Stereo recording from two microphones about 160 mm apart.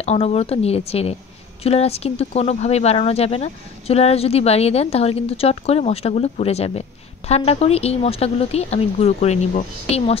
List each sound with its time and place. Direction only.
0.0 s speech: 40° left (ahead or behind)